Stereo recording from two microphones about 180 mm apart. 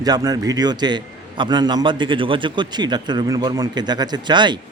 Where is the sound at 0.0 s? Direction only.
20° right (ahead or behind).